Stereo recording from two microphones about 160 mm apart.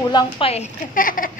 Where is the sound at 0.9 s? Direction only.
60° left (ahead or behind).